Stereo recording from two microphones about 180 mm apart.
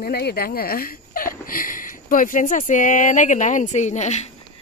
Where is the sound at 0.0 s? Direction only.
60° left (ahead or behind); by 4.3 s 40° left (ahead or behind).